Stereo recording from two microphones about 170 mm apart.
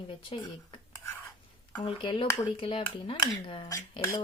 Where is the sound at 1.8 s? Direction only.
30° left (ahead or behind).